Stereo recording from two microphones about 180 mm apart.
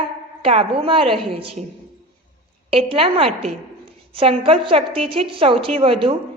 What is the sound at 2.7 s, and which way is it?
A woman's voice, 30° right (ahead or behind).